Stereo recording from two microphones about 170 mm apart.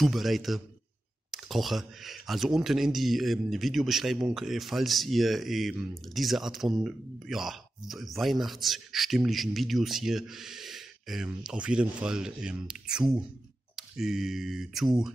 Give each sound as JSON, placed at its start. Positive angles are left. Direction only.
{"t": 0.0, "sound": "speech", "side_deg": 0}